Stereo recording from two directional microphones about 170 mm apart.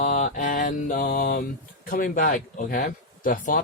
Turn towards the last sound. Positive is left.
turn(degrees=55)  # may be behind; listen again after turning